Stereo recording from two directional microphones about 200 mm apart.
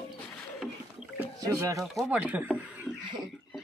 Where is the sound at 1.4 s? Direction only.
15° right (ahead or behind).